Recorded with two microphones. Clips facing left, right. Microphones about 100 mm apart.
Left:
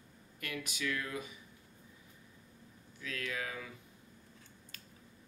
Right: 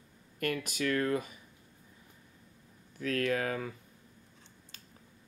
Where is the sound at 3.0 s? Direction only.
50° right (ahead or behind).